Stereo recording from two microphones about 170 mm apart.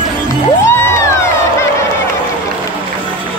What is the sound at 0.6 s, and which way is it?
Music, 15° left (ahead or behind).